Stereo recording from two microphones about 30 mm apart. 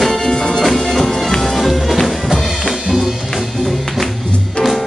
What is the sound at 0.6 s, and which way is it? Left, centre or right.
Music, centre.